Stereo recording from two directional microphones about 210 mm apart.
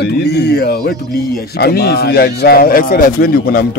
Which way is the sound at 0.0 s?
55° left (ahead or behind).